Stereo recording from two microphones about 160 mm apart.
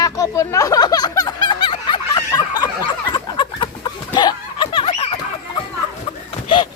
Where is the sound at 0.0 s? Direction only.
20° left (ahead or behind).